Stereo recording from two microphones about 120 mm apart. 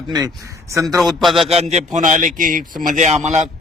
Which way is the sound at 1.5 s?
65° right (ahead or behind).